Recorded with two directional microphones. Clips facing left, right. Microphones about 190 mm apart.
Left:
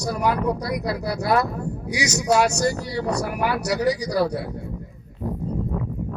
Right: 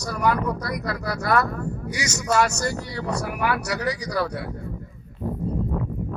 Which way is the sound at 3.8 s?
10° left (ahead or behind).